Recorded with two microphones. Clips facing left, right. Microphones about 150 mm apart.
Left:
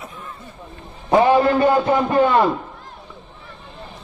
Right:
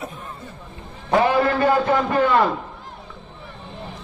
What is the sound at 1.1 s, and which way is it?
A man's voice, 20° left (ahead or behind).